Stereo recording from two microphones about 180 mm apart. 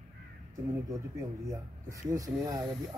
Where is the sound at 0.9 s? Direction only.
20° right (ahead or behind).